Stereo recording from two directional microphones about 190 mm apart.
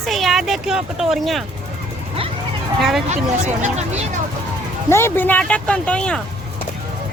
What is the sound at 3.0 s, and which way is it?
Speech, 35° right (ahead or behind).